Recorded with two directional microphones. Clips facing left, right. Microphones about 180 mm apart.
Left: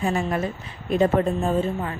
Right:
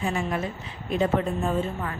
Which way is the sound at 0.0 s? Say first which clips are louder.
Left 3 dB; 40° left (ahead or behind).